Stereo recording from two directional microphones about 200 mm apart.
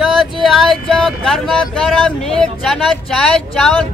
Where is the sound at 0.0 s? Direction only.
Centre (ahead or behind).